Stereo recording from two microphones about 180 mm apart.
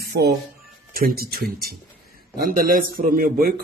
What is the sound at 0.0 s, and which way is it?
Music, 60° right (ahead or behind).